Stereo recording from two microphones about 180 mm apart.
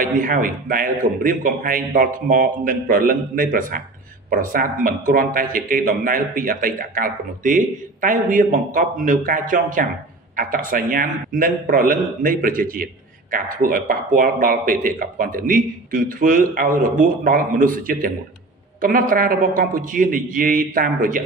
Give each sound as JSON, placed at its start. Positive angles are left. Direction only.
{"t": 0.0, "sound": "a man's voice", "side_deg": -50}